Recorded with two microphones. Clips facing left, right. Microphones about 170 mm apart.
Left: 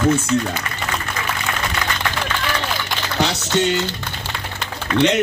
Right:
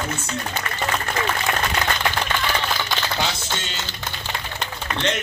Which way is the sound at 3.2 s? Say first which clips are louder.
Left 8 dB; 75° left (ahead or behind).